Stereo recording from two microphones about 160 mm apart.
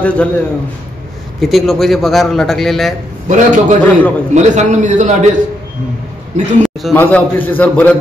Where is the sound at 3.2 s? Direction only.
50° right (ahead or behind).